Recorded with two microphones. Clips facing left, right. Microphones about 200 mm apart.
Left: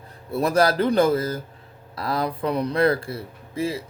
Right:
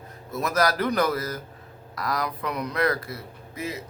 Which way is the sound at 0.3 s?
30° left (ahead or behind).